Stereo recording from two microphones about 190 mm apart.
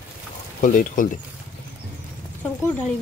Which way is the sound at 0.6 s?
45° left (ahead or behind).